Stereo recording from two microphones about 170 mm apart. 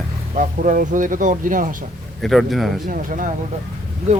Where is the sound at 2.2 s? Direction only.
Centre (ahead or behind).